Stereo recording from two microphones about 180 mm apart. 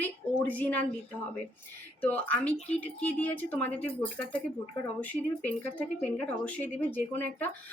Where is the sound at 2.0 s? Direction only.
10° left (ahead or behind).